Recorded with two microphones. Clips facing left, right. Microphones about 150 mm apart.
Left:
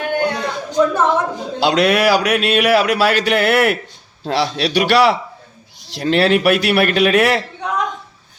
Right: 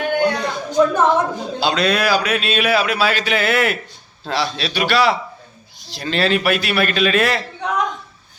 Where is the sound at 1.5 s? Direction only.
75° left (ahead or behind).